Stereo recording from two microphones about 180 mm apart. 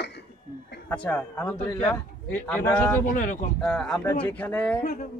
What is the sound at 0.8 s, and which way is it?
A man's voice, 10° left (ahead or behind).